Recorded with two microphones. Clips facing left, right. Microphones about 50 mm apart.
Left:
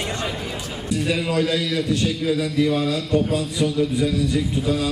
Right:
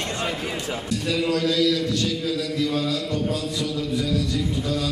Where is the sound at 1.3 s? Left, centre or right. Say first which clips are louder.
Right 3 dB; left.